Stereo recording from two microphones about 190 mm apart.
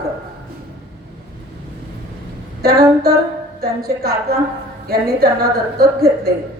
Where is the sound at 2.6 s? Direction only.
55° right (ahead or behind).